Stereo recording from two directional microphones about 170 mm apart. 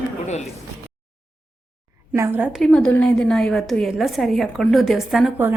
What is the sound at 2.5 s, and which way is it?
A woman's voice, 5° left (ahead or behind).